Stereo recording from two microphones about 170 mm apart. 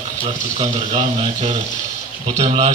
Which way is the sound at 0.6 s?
40° right (ahead or behind).